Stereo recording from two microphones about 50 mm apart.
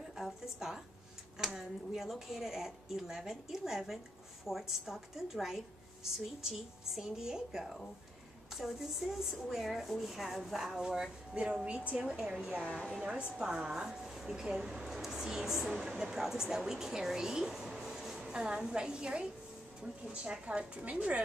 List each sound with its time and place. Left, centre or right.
1.5 s a woman's voice: centre
11.3 s a woman's voice: centre
12.0 s speech: centre
18.3 s a woman's voice: centre